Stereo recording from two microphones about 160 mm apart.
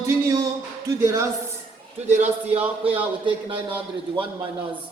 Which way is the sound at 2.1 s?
45° right (ahead or behind).